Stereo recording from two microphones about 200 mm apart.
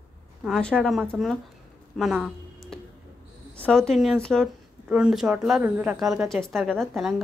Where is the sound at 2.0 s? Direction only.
Centre (ahead or behind).